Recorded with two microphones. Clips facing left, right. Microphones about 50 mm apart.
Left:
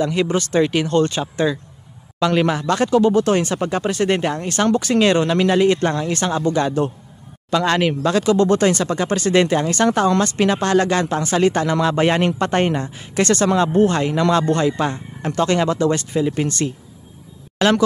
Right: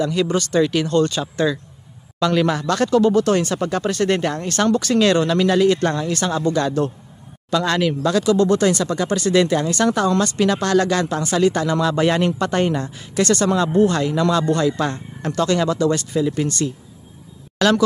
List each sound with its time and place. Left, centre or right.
0.0 s speech: left
7.5 s speech: left
14.9 s speech: centre
15.4 s a man's voice: left